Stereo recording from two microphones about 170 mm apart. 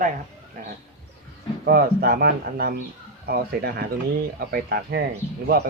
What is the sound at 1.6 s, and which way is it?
A man's voice, 60° right (ahead or behind).